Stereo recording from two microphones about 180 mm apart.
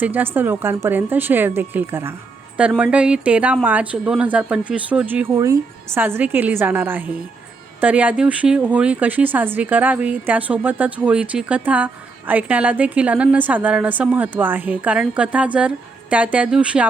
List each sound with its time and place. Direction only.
0.0 s speech: 10° right (ahead or behind)